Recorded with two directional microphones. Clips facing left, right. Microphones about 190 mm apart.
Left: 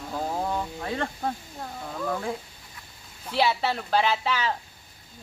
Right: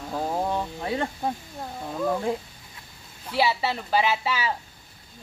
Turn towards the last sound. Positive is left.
turn(degrees=-5)  # may be behind; listen again after turning